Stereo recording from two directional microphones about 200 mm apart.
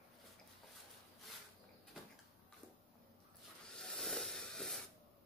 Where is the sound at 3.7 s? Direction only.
5° left (ahead or behind).